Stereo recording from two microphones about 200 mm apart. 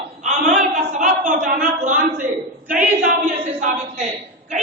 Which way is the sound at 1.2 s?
40° right (ahead or behind).